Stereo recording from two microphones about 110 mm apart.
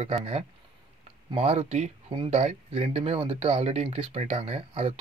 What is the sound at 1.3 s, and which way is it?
Speech, 65° right (ahead or behind).